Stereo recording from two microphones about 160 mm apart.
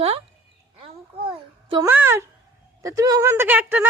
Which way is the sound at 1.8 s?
15° right (ahead or behind).